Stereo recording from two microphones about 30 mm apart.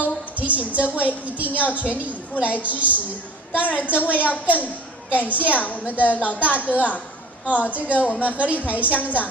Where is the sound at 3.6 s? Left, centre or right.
Left.